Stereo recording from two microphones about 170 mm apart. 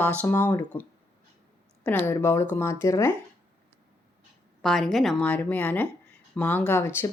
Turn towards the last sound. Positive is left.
turn(degrees=15)  # may be behind; listen again after turning